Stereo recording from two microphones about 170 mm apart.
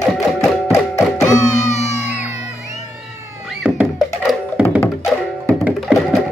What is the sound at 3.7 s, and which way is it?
Music, 5° right (ahead or behind).